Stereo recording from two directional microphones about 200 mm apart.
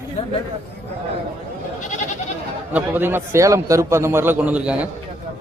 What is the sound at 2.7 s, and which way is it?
Speech, 10° right (ahead or behind).